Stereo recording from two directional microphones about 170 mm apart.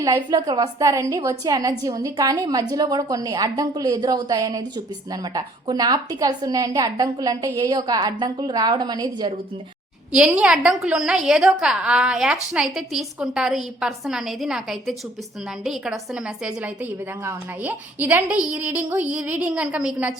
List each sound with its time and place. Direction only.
0.0 s a woman's voice: 20° right (ahead or behind)
10.1 s a woman's voice: 5° right (ahead or behind)